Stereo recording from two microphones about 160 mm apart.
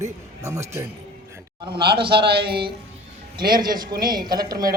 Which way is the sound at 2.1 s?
90° right.